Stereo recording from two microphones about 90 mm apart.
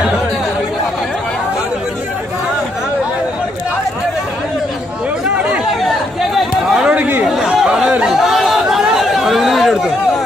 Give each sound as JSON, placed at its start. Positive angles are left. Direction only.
{"t": 5.8, "sound": "chatter", "side_deg": 0}
{"t": 6.9, "sound": "chatter", "side_deg": -20}
{"t": 7.2, "sound": "chatter", "side_deg": -5}